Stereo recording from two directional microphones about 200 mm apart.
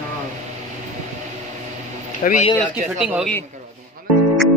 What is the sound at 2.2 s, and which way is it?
Speech, 40° left (ahead or behind).